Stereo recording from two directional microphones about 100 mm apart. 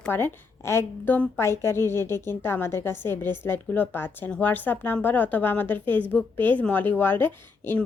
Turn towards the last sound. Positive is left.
turn(degrees=20)  # may be behind; listen again after turning